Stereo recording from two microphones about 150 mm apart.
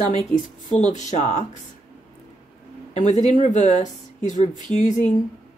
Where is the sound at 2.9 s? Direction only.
50° left (ahead or behind).